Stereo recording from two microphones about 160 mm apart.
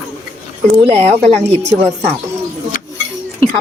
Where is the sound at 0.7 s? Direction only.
40° right (ahead or behind).